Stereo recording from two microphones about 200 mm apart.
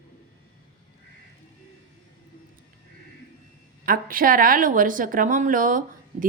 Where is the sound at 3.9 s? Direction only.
45° right (ahead or behind).